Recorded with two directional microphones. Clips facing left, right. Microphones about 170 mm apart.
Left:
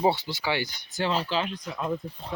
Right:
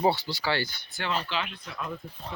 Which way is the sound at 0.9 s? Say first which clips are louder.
Left 8 dB; 40° left (ahead or behind).